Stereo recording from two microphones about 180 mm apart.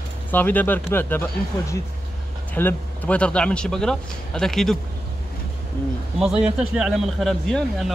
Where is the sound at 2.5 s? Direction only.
10° left (ahead or behind).